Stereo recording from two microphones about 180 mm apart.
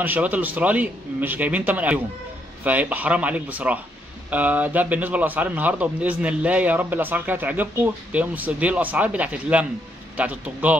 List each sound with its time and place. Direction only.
0.0 s a man's voice: 10° right (ahead or behind)